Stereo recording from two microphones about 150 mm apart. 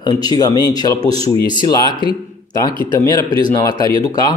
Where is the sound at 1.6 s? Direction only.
30° left (ahead or behind).